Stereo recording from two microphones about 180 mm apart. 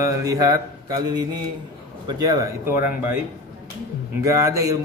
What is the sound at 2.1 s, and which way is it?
Speech, 20° right (ahead or behind).